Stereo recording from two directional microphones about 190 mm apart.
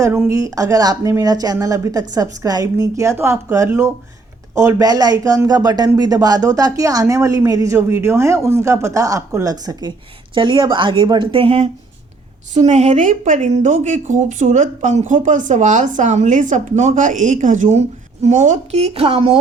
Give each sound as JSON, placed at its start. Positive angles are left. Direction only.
{"t": 0.0, "sound": "a woman's voice", "side_deg": -15}